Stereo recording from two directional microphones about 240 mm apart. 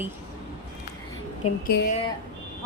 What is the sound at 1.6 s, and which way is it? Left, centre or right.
Speech, left.